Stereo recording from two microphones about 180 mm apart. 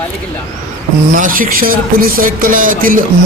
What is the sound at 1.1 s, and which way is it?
Speech, 50° right (ahead or behind).